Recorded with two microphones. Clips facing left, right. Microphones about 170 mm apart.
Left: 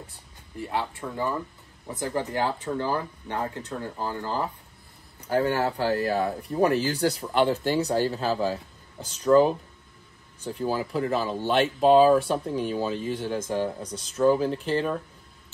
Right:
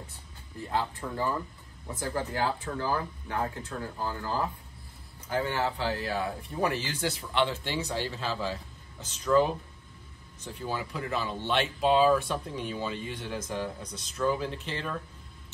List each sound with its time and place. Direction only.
0.7 s speech: 15° left (ahead or behind)
5.3 s speech: 40° left (ahead or behind)